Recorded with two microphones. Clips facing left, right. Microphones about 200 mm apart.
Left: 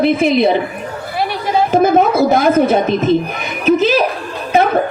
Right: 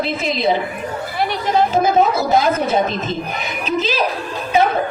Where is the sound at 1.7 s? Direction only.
55° left (ahead or behind).